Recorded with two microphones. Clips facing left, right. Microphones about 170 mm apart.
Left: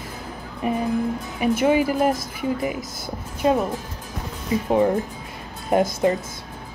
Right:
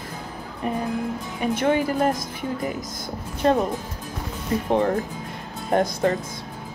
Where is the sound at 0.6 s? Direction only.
10° left (ahead or behind).